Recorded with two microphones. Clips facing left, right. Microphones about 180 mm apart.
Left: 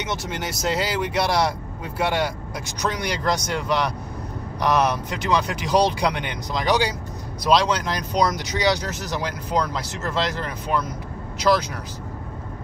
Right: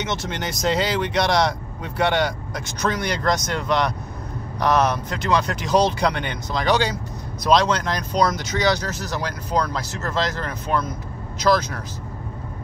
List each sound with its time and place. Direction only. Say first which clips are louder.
0.0 s speech: right 1 dB; 10° left (ahead or behind)